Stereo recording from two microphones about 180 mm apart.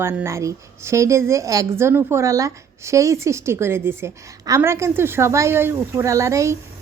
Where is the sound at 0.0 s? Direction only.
10° right (ahead or behind).